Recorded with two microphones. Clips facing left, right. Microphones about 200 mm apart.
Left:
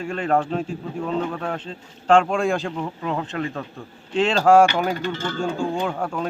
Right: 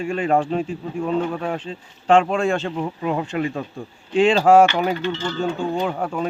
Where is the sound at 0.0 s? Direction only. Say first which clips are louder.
Right 2 dB; 5° right (ahead or behind).